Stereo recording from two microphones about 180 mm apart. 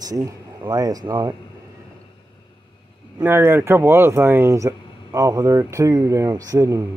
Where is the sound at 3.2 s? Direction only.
10° right (ahead or behind).